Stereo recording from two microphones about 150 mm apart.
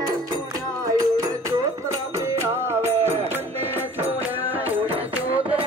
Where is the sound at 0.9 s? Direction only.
25° right (ahead or behind).